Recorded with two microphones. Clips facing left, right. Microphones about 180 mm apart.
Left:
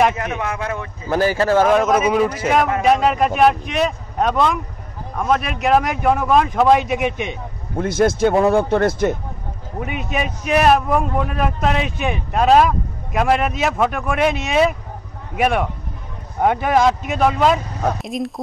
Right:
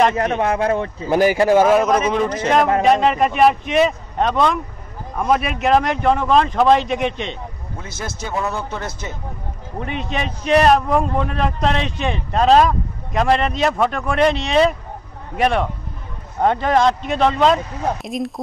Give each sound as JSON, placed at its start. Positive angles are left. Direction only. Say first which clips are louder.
{"t": 0.2, "sound": "speech", "louder": "right 6 dB", "side_deg": -35}
{"t": 1.1, "sound": "speech", "louder": "right 2 dB", "side_deg": -15}
{"t": 7.7, "sound": "speech", "louder": "left 15 dB", "side_deg": 55}
{"t": 9.8, "sound": "speech", "louder": "left 1 dB", "side_deg": 10}